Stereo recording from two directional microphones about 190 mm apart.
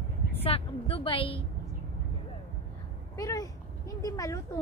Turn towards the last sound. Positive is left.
turn(degrees=15)  # may be behind; listen again after turning